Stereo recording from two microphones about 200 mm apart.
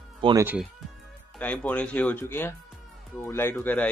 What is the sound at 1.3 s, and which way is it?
Speech, 5° left (ahead or behind).